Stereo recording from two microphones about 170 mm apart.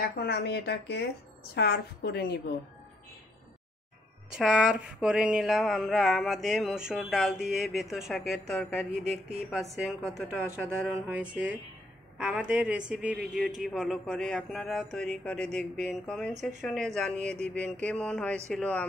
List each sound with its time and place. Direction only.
0.0 s speech: 70° left (ahead or behind)
4.4 s a sound: 5° right (ahead or behind)
18.5 s speech: 10° left (ahead or behind)